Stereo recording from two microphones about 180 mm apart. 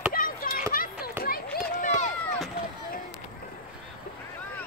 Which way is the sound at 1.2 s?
50° left (ahead or behind).